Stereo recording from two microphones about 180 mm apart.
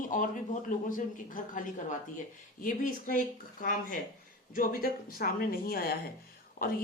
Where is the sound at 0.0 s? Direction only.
45° left (ahead or behind).